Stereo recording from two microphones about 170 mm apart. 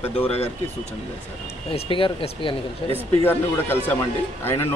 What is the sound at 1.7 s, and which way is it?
Speech, 30° left (ahead or behind).